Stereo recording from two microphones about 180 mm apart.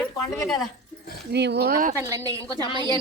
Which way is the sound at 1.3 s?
70° right (ahead or behind).